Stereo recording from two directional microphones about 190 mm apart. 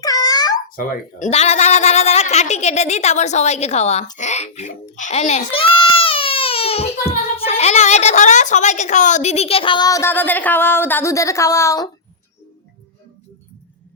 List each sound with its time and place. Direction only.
0.0 s babbling: 20° left (ahead or behind)
0.8 s a child's voice: 35° left (ahead or behind); by 11.9 s 15° left (ahead or behind)